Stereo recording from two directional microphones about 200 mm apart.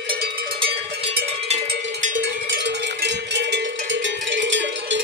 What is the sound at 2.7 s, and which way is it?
Cowbell, 60° right (ahead or behind).